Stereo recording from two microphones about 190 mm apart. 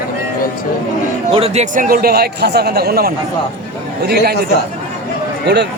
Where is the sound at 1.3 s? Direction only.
30° right (ahead or behind); by 4.4 s 55° right (ahead or behind).